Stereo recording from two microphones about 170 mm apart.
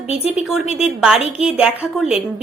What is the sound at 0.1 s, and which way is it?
Speech, 35° left (ahead or behind).